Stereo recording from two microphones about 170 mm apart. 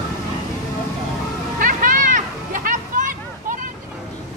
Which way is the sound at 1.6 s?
55° right (ahead or behind).